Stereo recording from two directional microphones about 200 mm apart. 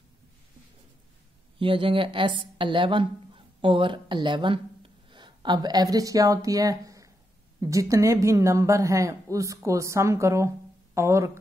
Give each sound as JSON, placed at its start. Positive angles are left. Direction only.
{"t": 1.6, "sound": "a woman's voice", "side_deg": -25}